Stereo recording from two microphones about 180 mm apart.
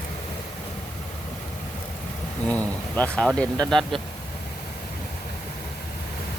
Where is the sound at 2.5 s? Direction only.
10° left (ahead or behind).